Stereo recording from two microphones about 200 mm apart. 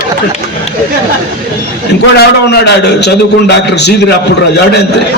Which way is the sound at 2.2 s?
55° left (ahead or behind).